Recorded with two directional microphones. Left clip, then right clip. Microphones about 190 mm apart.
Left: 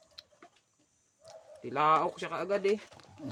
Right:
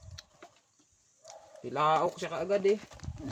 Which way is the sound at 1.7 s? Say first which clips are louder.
Left 1 dB; 5° right (ahead or behind).